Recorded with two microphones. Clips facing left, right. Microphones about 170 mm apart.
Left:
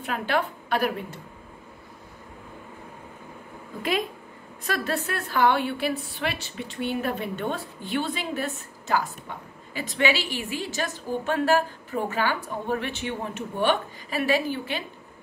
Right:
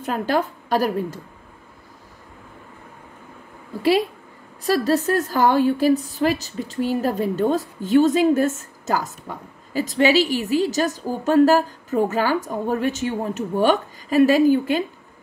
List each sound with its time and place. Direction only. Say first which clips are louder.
0.0 s a woman's voice: right 5 dB; 40° right (ahead or behind)
4.6 s a woman's voice: right 9 dB; 35° right (ahead or behind)